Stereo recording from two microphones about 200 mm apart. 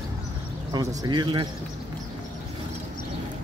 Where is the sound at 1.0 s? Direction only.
20° right (ahead or behind).